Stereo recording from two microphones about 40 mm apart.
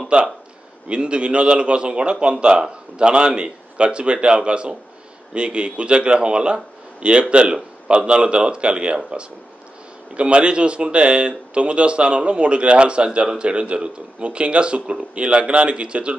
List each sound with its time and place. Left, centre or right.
0.1 s a man's voice: right